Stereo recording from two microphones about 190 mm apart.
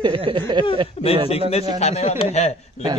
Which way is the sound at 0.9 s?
30° left (ahead or behind).